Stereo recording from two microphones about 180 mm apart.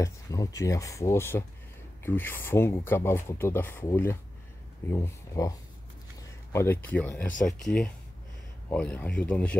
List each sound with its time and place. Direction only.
0.0 s speech: 20° left (ahead or behind)
6.5 s speech: 15° left (ahead or behind)